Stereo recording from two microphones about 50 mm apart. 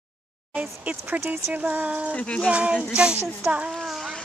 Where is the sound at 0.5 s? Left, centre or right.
Right.